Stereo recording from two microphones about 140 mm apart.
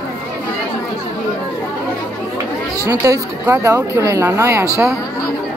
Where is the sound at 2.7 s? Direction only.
20° right (ahead or behind).